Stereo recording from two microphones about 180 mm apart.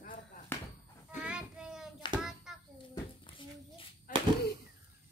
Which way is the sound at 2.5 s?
Centre (ahead or behind).